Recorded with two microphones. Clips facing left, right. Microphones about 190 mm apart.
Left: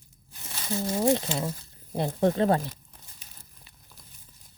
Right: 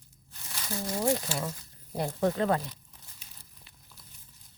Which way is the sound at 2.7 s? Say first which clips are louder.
Left 2 dB; 50° left (ahead or behind).